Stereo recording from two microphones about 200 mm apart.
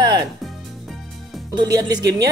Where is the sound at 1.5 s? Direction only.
20° right (ahead or behind).